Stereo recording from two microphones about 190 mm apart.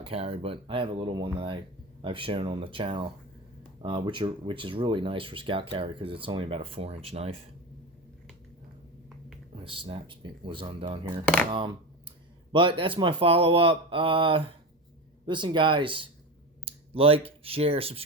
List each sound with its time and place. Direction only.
0.0 s speech: 30° right (ahead or behind)
9.6 s speech: 30° right (ahead or behind)